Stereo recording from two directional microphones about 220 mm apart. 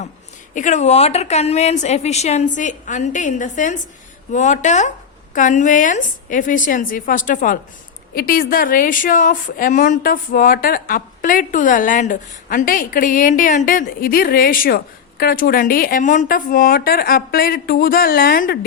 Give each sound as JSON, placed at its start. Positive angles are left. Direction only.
{"t": 0.5, "sound": "a woman's voice", "side_deg": 35}